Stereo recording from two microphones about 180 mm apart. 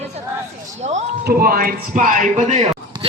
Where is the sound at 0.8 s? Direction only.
40° right (ahead or behind).